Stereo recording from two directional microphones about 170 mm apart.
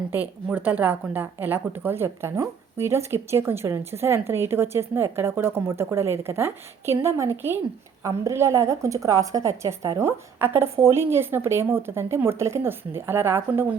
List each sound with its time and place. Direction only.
0.1 s a woman's voice: 10° right (ahead or behind)